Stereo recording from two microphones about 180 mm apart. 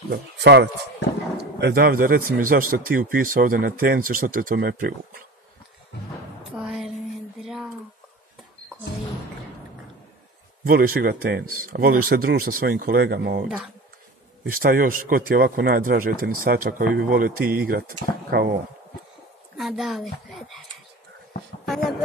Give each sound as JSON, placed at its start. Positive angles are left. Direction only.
{"t": 0.1, "sound": "a man's voice", "side_deg": -70}
{"t": 6.5, "sound": "music", "side_deg": 0}
{"t": 7.4, "sound": "a sound", "side_deg": 0}
{"t": 10.6, "sound": "speech", "side_deg": -55}
{"t": 14.5, "sound": "a man's voice", "side_deg": -50}
{"t": 19.5, "sound": "speech", "side_deg": 0}